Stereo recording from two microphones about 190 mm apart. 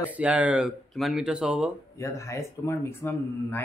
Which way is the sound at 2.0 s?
15° left (ahead or behind).